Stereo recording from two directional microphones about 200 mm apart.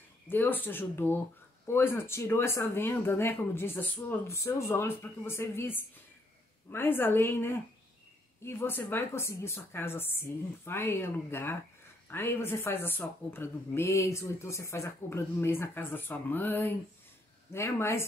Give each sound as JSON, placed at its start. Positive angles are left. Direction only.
{"t": 0.3, "sound": "a woman's voice", "side_deg": 10}